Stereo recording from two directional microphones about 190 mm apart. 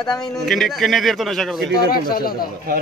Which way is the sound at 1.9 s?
50° left (ahead or behind).